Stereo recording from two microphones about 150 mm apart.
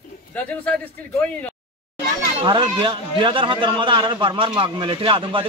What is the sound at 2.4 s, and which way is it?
Speech, 30° right (ahead or behind).